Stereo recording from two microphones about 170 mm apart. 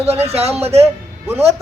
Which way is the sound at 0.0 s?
35° right (ahead or behind).